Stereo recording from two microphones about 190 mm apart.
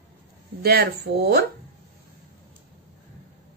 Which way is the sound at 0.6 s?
55° right (ahead or behind).